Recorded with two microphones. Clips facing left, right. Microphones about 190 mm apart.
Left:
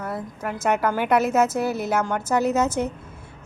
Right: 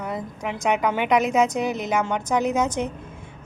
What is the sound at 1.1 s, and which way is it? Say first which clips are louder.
Speech: even; 15° right (ahead or behind).